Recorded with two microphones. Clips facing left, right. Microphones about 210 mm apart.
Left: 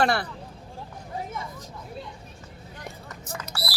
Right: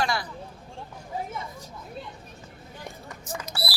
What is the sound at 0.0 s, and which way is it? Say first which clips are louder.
Speech: left 5 dB; 60° left (ahead or behind).